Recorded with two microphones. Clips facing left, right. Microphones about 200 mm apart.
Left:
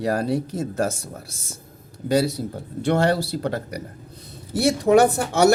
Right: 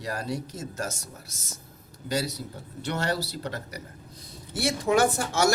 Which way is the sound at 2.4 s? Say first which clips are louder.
Left 9 dB; 55° left (ahead or behind).